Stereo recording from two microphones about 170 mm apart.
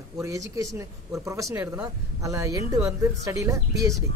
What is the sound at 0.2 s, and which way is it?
Speech, 20° right (ahead or behind).